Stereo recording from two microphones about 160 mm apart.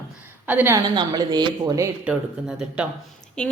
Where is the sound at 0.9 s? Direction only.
25° right (ahead or behind).